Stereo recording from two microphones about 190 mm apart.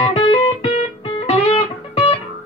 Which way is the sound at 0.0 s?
35° left (ahead or behind).